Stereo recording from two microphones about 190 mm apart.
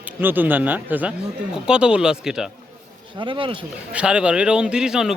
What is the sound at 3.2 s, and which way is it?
Speech, 25° right (ahead or behind).